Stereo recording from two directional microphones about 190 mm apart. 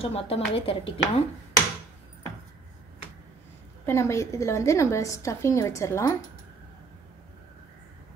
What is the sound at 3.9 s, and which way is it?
A woman's voice, 15° left (ahead or behind).